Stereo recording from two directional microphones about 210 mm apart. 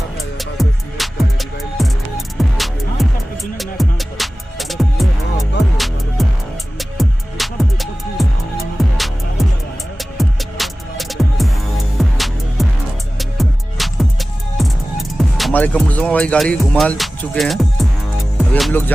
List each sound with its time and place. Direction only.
0.4 s music: centre (ahead or behind)
6.2 s music: centre (ahead or behind)